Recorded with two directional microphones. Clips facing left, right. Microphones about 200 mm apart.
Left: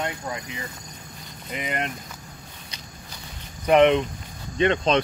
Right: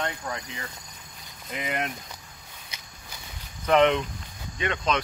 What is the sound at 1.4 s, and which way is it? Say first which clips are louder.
Speech: left 1 dB; centre (ahead or behind).